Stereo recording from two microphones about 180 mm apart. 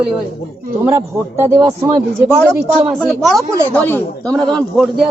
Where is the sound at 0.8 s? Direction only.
15° right (ahead or behind).